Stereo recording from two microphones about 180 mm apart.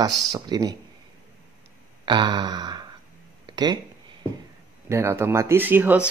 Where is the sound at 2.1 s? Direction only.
25° right (ahead or behind).